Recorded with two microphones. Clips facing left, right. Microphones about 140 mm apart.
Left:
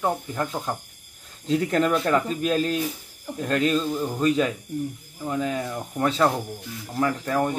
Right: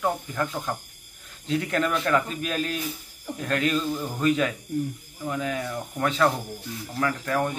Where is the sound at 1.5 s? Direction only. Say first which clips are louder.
Left 4 dB; 35° left (ahead or behind).